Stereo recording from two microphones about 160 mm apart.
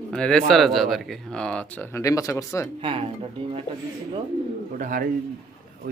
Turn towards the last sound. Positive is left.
turn(degrees=-55)  # may be behind; listen again after turning